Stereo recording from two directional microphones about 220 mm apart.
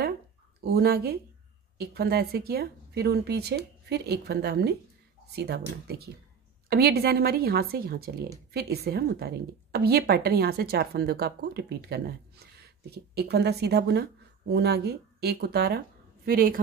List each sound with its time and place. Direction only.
0.7 s a woman's voice: 45° right (ahead or behind)